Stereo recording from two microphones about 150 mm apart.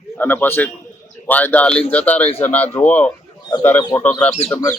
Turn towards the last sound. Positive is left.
turn(degrees=45)  # may be behind; listen again after turning